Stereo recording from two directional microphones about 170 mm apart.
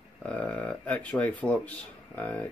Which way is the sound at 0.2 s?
5° left (ahead or behind).